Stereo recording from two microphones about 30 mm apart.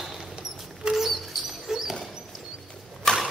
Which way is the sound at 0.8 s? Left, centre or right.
Right.